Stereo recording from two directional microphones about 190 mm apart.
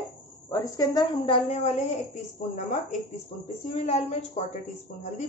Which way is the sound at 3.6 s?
35° left (ahead or behind).